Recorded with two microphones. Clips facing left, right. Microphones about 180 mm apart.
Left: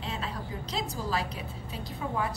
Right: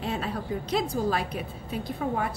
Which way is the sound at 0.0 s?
55° right (ahead or behind).